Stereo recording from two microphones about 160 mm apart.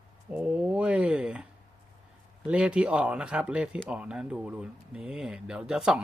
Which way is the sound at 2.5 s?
5° right (ahead or behind).